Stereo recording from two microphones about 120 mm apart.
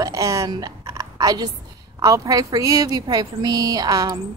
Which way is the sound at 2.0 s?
30° right (ahead or behind).